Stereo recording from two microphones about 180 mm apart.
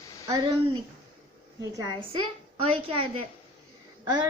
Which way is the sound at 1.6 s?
20° right (ahead or behind).